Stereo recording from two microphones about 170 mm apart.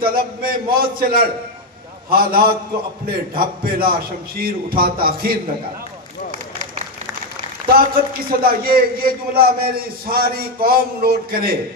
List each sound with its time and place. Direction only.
0.0 s a man's voice: 60° right (ahead or behind)
7.6 s a man's voice: 60° right (ahead or behind)